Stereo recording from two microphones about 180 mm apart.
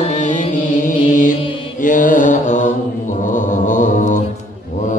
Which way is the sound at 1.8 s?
45° left (ahead or behind).